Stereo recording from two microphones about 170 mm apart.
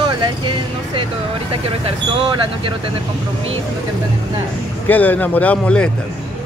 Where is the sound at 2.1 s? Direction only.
30° right (ahead or behind).